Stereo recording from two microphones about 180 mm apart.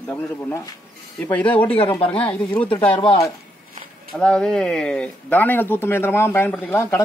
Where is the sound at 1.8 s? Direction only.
30° left (ahead or behind).